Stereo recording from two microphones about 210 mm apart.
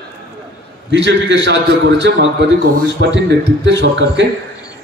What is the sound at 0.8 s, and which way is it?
A man's voice, 60° right (ahead or behind).